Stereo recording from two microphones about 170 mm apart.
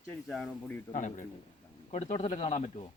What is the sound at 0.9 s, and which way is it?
Speech, 50° left (ahead or behind).